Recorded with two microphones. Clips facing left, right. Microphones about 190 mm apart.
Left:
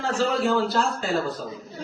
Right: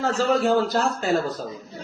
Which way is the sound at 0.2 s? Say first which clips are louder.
Right 2 dB; 45° right (ahead or behind).